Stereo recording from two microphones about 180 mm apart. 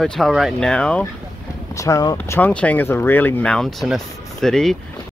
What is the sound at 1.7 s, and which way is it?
Speech, 15° left (ahead or behind).